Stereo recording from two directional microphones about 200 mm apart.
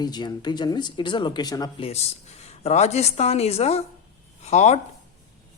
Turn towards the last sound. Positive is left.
turn(degrees=35)  # may be behind; listen again after turning